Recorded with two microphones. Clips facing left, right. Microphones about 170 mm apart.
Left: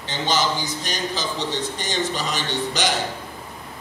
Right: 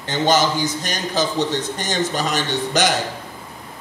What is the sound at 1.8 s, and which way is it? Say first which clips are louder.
A man's voice: right 3 dB; 50° right (ahead or behind).